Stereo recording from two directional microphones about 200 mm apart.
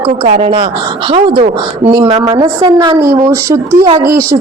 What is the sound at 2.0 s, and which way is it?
A woman's voice, 25° right (ahead or behind).